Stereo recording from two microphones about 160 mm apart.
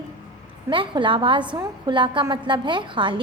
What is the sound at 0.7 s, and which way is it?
A woman's voice, 30° right (ahead or behind).